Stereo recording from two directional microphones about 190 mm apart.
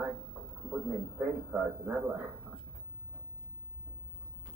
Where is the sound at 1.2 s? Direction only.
5° right (ahead or behind).